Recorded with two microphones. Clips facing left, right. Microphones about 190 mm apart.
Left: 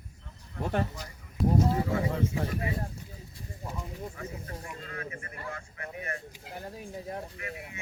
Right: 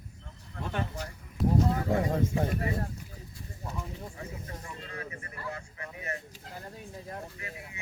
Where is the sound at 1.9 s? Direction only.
40° right (ahead or behind).